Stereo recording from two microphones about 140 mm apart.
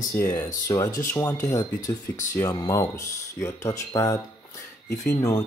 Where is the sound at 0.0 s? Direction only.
20° left (ahead or behind).